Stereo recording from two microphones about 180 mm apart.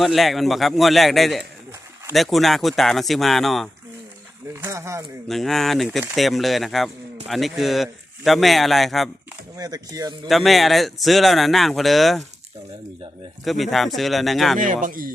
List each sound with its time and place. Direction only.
0.0 s speech: centre (ahead or behind)
4.6 s speech: 15° right (ahead or behind)
5.3 s speech: centre (ahead or behind)
9.6 s speech: 20° right (ahead or behind)
10.2 s speech: centre (ahead or behind)
13.4 s speech: centre (ahead or behind)
14.6 s speech: 45° right (ahead or behind)